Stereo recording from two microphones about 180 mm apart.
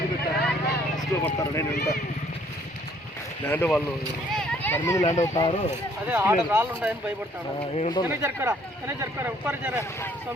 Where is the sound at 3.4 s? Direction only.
10° left (ahead or behind).